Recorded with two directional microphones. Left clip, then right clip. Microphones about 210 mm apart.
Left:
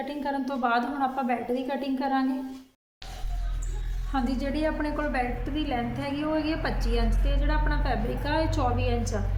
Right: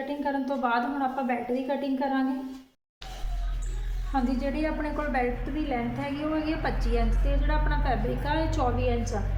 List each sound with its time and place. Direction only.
0.3 s a woman's voice: 15° left (ahead or behind)
4.1 s a woman's voice: 15° left (ahead or behind)